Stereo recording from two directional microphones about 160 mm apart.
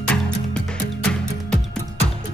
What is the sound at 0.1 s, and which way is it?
Music, 5° left (ahead or behind).